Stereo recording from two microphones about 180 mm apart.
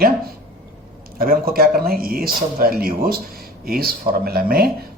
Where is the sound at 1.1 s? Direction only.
55° right (ahead or behind).